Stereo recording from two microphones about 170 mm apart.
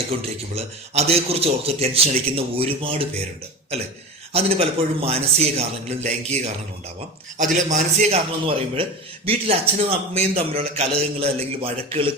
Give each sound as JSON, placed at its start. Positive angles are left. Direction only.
{"t": 0.1, "sound": "a man's voice", "side_deg": -35}
{"t": 4.3, "sound": "a man's voice", "side_deg": -35}
{"t": 7.3, "sound": "a man's voice", "side_deg": -45}
{"t": 8.4, "sound": "a man's voice", "side_deg": -35}